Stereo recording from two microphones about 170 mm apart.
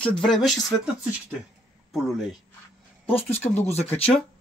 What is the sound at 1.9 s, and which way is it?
Speech, centre (ahead or behind).